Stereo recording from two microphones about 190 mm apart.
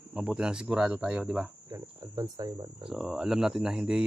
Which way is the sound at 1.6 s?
20° right (ahead or behind).